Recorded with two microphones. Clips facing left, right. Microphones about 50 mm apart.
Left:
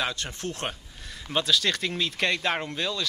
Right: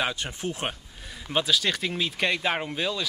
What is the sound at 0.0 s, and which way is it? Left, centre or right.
Speech, centre.